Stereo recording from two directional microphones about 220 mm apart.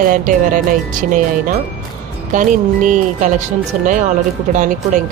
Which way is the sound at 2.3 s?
35° right (ahead or behind).